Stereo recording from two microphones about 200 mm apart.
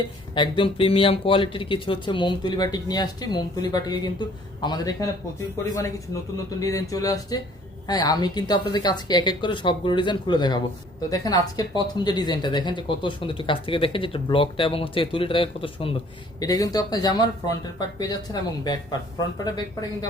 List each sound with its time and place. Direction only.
0.3 s speech: 25° left (ahead or behind)